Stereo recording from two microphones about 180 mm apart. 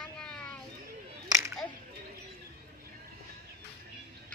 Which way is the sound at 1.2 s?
15° right (ahead or behind).